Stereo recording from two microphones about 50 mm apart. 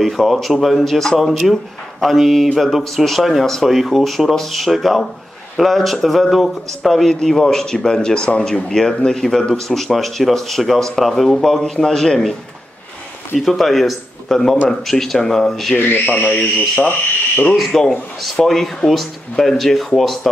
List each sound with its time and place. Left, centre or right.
0.0 s speech: centre
13.5 s speech: centre
15.7 s speech: left
17.6 s speech: centre